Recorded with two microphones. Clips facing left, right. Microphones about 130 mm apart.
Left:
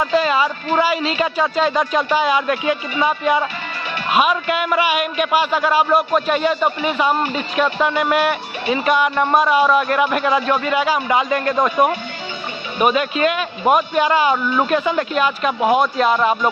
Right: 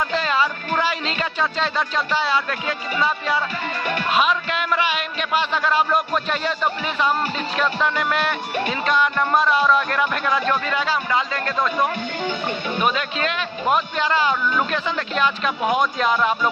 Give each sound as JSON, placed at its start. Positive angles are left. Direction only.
{"t": 0.0, "sound": "a man's voice", "side_deg": 10}